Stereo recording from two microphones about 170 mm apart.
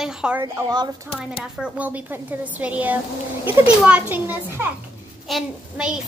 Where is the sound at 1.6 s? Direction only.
10° right (ahead or behind).